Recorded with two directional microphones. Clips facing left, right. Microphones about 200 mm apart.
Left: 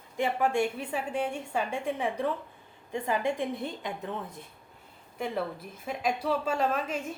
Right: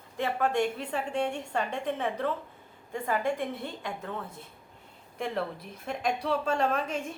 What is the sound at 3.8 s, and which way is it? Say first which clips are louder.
Speech: left 1 dB; 20° left (ahead or behind).